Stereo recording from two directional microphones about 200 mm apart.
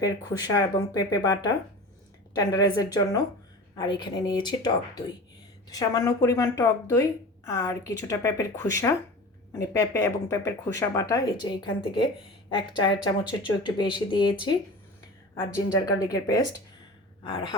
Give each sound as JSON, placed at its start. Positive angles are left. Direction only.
{"t": 0.0, "sound": "speech", "side_deg": 20}